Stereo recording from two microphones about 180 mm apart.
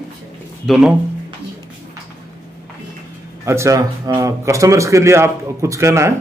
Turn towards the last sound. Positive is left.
turn(degrees=-15)  # may be behind; listen again after turning